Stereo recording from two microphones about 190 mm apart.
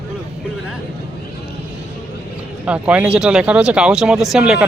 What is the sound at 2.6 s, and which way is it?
Speech, 5° right (ahead or behind).